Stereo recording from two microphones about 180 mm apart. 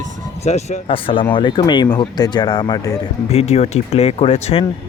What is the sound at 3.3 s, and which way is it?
Speech, 35° left (ahead or behind).